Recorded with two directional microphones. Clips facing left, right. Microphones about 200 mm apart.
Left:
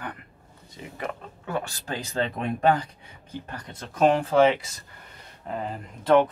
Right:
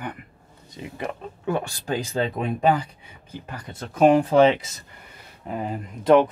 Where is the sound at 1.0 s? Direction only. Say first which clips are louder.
Right 4 dB; 15° right (ahead or behind).